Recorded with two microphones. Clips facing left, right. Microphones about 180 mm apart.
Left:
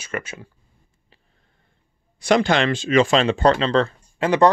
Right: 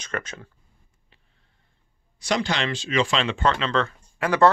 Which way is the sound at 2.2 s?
55° left (ahead or behind).